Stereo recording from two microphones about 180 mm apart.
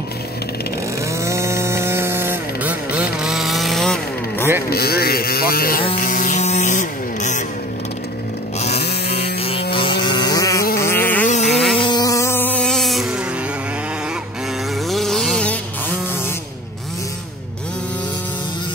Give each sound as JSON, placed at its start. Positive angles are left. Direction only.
{"t": 1.2, "sound": "chainsaw", "side_deg": -15}
{"t": 4.6, "sound": "speech", "side_deg": 60}
{"t": 5.9, "sound": "music", "side_deg": 50}
{"t": 8.7, "sound": "a sound", "side_deg": 65}
{"t": 9.1, "sound": "a sound", "side_deg": 35}
{"t": 11.4, "sound": "insect", "side_deg": 0}
{"t": 11.8, "sound": "music", "side_deg": 20}
{"t": 14.9, "sound": "vehicle", "side_deg": 0}